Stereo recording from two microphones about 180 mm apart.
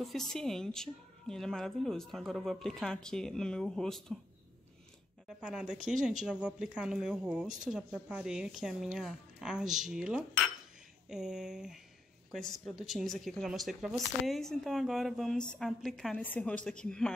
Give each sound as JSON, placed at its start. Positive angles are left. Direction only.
{"t": 0.0, "sound": "a woman's voice", "side_deg": 0}
{"t": 5.4, "sound": "a woman's voice", "side_deg": -5}